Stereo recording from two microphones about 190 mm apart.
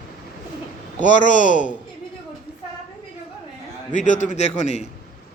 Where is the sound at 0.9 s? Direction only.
40° left (ahead or behind).